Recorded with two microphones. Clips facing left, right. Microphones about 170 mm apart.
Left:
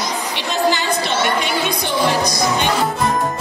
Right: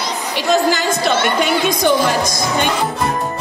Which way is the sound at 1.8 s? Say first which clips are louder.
Right 3 dB; 45° right (ahead or behind).